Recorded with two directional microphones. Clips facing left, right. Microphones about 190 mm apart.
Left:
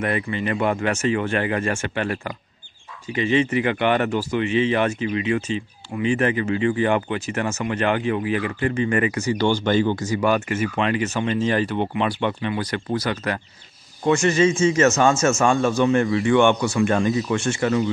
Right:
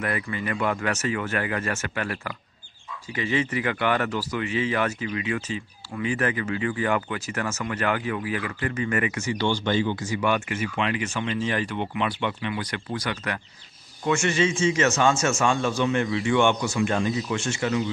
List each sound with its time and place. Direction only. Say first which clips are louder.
0.0 s speech: left 5 dB; 25° left (ahead or behind); by 17.8 s 50° left (ahead or behind)